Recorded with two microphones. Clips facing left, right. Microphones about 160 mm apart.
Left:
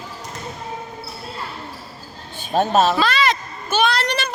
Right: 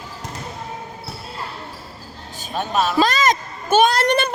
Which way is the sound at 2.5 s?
40° left (ahead or behind).